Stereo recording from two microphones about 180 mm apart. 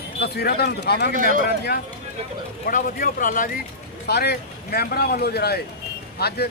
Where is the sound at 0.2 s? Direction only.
60° left (ahead or behind).